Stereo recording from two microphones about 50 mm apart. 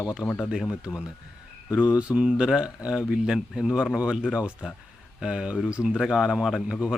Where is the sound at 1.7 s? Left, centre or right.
Right; by 6.6 s centre.